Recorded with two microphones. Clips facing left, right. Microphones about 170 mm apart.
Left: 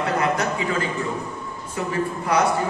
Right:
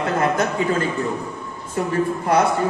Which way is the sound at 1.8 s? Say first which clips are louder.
Right 4 dB; 50° right (ahead or behind).